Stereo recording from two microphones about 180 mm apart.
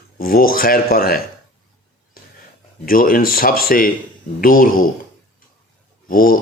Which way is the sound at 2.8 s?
50° left (ahead or behind).